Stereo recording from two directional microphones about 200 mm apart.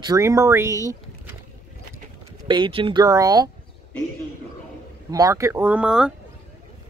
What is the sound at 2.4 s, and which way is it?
Speech, 25° right (ahead or behind).